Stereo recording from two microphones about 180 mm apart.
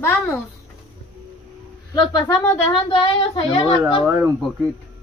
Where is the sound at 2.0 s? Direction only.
20° left (ahead or behind).